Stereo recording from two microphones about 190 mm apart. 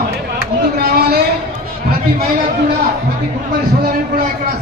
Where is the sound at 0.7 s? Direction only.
55° right (ahead or behind).